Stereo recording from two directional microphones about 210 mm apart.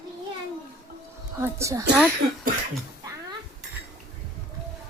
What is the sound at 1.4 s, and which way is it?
Speech, 15° right (ahead or behind).